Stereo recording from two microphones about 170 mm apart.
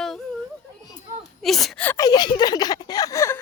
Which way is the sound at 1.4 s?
Centre (ahead or behind).